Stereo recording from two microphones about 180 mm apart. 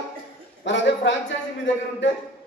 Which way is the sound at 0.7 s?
90° left.